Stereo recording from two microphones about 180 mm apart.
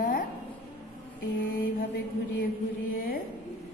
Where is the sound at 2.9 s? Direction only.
55° left (ahead or behind).